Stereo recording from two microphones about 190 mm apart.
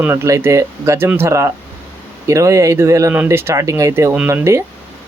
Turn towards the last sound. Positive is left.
turn(degrees=-15)  # may be behind; listen again after turning